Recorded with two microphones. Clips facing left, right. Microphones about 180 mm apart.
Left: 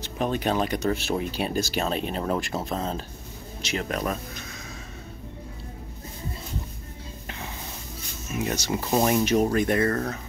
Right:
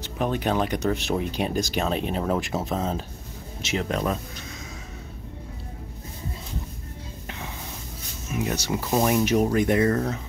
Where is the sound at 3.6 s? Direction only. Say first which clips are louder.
Right 2 dB; 20° right (ahead or behind).